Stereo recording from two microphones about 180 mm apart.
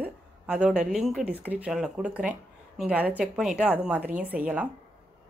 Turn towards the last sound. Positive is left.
turn(degrees=-5)  # may be behind; listen again after turning